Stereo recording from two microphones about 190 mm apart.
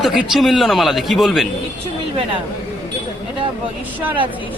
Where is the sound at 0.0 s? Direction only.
Centre (ahead or behind).